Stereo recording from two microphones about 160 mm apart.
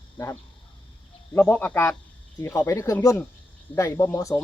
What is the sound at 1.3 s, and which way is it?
Speech, 15° left (ahead or behind).